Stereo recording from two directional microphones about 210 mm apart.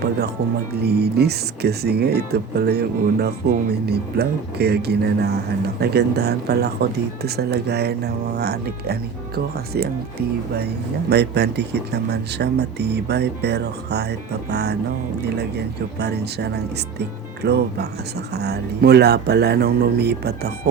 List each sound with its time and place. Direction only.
0.8 s speech: 50° right (ahead or behind)